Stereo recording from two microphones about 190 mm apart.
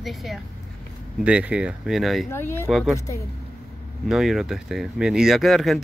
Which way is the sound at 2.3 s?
10° left (ahead or behind).